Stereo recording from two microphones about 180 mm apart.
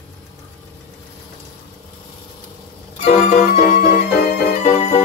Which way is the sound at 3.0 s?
40° left (ahead or behind).